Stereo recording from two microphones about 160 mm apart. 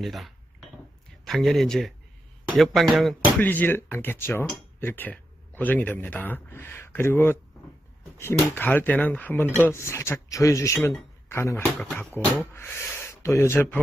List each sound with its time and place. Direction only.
0.0 s speech: centre (ahead or behind)
3.3 s speech: 10° left (ahead or behind)